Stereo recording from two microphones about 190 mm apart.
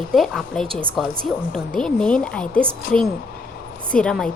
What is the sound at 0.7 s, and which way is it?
Speech, 30° right (ahead or behind).